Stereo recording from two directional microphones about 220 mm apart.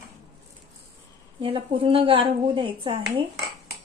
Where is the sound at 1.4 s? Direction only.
25° right (ahead or behind).